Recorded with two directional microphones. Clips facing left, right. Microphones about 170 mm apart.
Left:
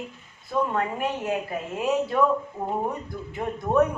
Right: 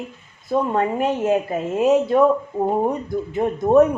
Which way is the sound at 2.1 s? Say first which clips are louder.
Right 7 dB; 40° right (ahead or behind).